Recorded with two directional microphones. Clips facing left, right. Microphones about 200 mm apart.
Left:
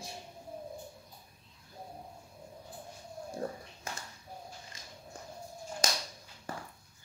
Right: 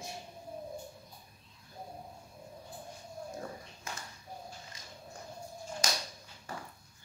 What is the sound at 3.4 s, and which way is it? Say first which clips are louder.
Speech: left 5 dB; 40° left (ahead or behind).